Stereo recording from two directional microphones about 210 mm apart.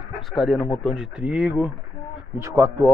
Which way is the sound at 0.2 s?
Centre (ahead or behind).